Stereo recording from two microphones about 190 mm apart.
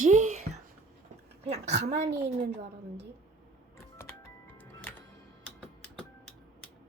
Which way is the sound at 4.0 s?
10° left (ahead or behind).